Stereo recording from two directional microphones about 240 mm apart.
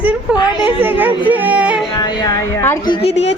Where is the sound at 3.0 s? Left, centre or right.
Left.